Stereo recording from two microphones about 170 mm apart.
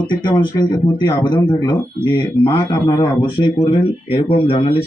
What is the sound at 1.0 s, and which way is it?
Speech, 25° left (ahead or behind).